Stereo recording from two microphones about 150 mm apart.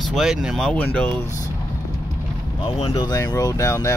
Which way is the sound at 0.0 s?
Centre (ahead or behind).